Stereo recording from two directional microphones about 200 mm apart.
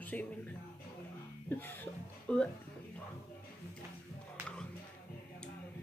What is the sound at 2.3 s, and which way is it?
Speech, 5° left (ahead or behind).